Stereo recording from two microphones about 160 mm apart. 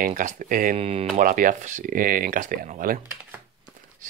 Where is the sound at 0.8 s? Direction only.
40° right (ahead or behind).